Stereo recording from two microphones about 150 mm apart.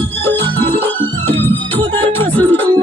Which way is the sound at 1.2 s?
15° left (ahead or behind).